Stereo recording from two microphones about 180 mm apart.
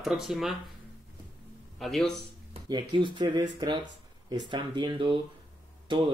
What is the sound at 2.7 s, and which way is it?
Speech, 25° right (ahead or behind).